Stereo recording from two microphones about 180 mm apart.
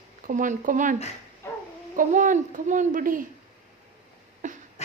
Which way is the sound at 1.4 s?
15° left (ahead or behind).